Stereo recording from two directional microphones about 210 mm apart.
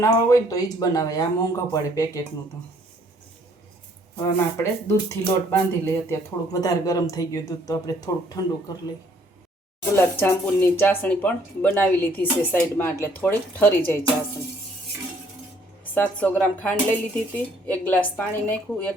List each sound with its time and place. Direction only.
0.0 s speech: 15° left (ahead or behind)
4.5 s speech: 10° left (ahead or behind)
10.0 s speech: 10° left (ahead or behind)
15.8 s speech: 10° left (ahead or behind)